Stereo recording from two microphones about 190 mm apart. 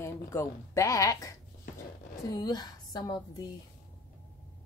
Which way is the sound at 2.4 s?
20° left (ahead or behind).